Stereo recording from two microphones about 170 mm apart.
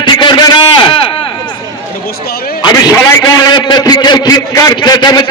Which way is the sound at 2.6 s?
20° left (ahead or behind).